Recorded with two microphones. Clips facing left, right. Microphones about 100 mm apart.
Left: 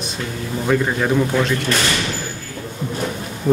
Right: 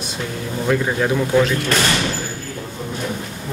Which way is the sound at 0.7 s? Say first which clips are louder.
Left 1 dB; centre (ahead or behind).